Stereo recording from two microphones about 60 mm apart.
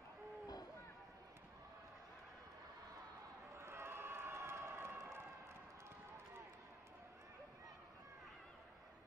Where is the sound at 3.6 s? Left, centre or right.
Right.